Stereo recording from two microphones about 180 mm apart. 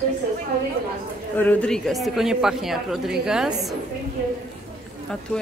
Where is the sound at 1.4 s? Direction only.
10° left (ahead or behind).